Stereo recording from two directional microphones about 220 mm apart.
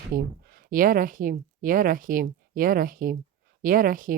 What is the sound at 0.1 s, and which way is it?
Speech, 40° right (ahead or behind).